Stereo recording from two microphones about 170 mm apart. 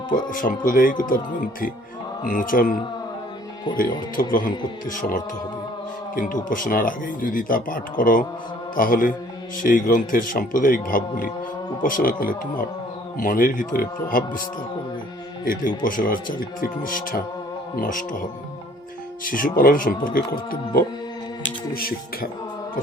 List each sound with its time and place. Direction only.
0.1 s speech: 55° left (ahead or behind)
3.8 s speech: 55° left (ahead or behind)
15.4 s speech: 55° left (ahead or behind)
19.2 s speech: 55° left (ahead or behind)
21.7 s speech: 60° left (ahead or behind)